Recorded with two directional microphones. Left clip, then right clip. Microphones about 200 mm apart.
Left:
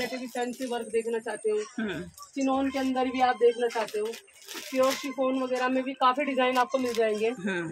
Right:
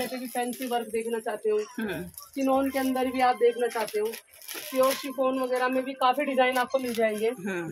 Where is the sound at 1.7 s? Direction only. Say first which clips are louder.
Right 1 dB; centre (ahead or behind).